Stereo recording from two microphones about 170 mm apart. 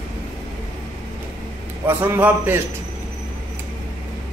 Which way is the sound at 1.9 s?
10° right (ahead or behind).